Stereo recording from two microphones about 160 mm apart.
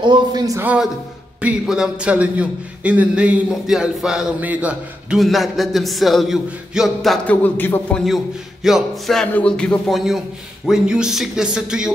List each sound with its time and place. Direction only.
0.0 s speech: 25° right (ahead or behind)
1.4 s a man's voice: 5° right (ahead or behind)
7.4 s a man's voice: 10° left (ahead or behind)
8.6 s a man's voice: centre (ahead or behind)